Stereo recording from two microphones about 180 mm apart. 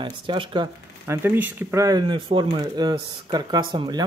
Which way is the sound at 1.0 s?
15° right (ahead or behind).